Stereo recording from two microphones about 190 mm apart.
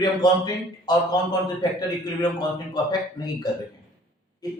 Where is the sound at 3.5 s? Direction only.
20° left (ahead or behind).